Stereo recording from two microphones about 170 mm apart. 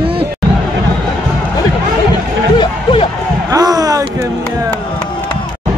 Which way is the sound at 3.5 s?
20° right (ahead or behind).